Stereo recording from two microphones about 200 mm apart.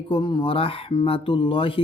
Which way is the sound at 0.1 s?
25° left (ahead or behind).